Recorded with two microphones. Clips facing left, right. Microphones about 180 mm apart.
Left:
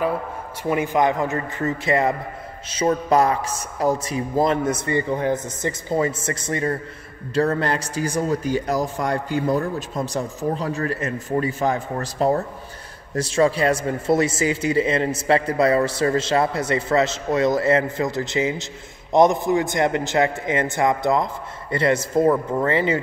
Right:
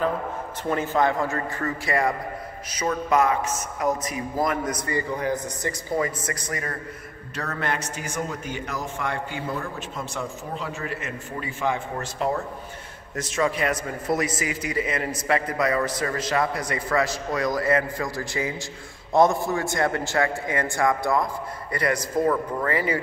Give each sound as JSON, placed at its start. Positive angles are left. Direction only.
{"t": 0.7, "sound": "a man's voice", "side_deg": 15}